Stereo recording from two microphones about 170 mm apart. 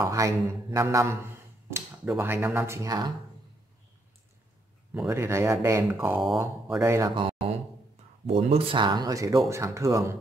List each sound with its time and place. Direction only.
0.0 s speech: 15° right (ahead or behind)
5.1 s speech: 15° right (ahead or behind)
6.1 s speech: centre (ahead or behind)
6.8 s speech: 15° right (ahead or behind)
7.2 s a sound: 30° right (ahead or behind)
8.3 s speech: 35° right (ahead or behind); by 10.1 s 15° right (ahead or behind)